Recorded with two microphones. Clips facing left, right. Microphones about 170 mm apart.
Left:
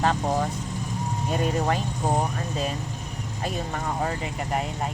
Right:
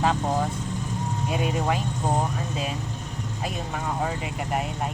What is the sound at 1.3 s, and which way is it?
Speech, 5° right (ahead or behind).